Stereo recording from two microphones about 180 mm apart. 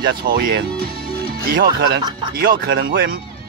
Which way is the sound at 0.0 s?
60° right (ahead or behind).